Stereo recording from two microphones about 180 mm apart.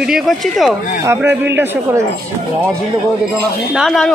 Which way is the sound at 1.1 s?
10° right (ahead or behind).